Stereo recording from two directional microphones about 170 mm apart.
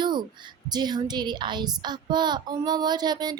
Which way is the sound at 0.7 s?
25° right (ahead or behind).